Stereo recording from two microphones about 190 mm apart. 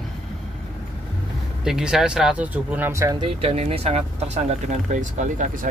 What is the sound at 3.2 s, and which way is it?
Speech, 30° right (ahead or behind).